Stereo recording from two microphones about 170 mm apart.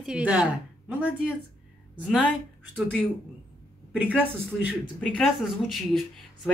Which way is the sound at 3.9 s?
10° right (ahead or behind).